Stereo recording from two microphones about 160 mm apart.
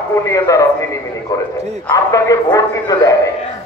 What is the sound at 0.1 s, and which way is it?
A man's voice, 20° left (ahead or behind).